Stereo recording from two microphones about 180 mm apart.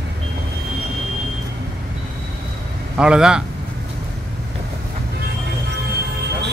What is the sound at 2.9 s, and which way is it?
Speech, 5° right (ahead or behind).